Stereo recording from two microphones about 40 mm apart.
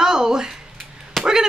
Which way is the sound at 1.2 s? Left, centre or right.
Centre.